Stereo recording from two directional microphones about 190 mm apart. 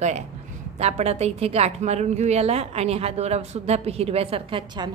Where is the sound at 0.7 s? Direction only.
35° right (ahead or behind).